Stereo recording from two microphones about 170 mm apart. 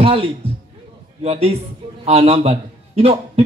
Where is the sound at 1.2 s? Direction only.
35° right (ahead or behind).